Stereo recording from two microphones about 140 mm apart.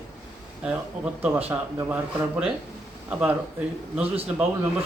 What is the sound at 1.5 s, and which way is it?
Speech, 20° right (ahead or behind).